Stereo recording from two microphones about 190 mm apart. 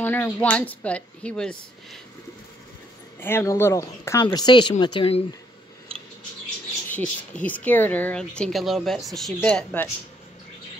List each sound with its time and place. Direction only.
0.0 s speech: 10° left (ahead or behind)
3.2 s speech: 10° left (ahead or behind); by 5.2 s 25° left (ahead or behind)
7.0 s speech: 10° left (ahead or behind)